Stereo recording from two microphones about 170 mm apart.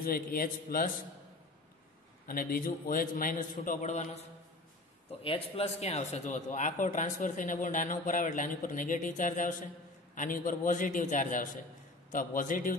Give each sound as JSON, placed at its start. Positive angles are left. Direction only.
{"t": 0.0, "sound": "a man's voice", "side_deg": 60}
{"t": 2.2, "sound": "a man's voice", "side_deg": 55}